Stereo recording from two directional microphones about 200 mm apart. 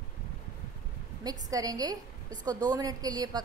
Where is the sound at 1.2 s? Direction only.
20° right (ahead or behind).